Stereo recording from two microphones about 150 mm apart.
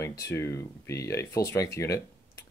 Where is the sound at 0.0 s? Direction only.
20° left (ahead or behind).